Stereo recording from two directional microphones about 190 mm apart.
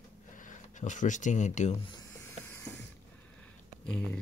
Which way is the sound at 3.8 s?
5° left (ahead or behind).